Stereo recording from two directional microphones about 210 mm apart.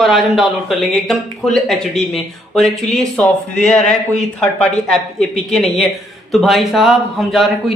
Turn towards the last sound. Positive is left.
turn(degrees=0)  # may be behind; listen again after turning